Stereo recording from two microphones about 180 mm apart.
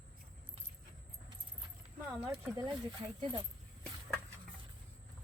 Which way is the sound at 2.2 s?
20° right (ahead or behind).